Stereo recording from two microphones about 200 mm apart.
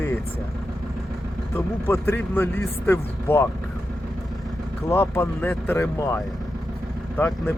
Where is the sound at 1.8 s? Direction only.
10° left (ahead or behind).